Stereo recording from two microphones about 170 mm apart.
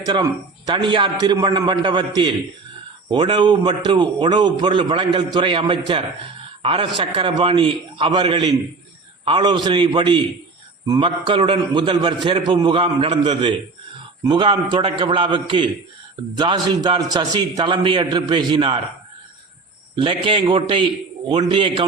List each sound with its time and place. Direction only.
0.0 s a man's voice: 25° right (ahead or behind)
20.0 s a man's voice: 30° right (ahead or behind)